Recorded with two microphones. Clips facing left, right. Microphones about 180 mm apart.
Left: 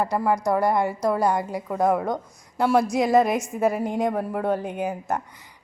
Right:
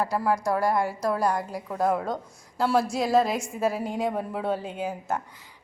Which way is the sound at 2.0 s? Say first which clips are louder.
Left 4 dB; 20° left (ahead or behind).